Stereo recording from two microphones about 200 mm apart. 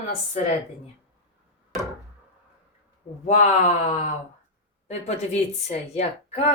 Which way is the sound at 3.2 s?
40° left (ahead or behind).